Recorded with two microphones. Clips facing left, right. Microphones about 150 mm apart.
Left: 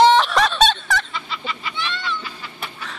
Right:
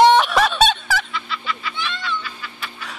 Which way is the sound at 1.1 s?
25° left (ahead or behind).